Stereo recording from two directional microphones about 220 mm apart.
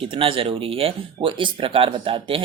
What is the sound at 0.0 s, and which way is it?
Speech, 25° right (ahead or behind).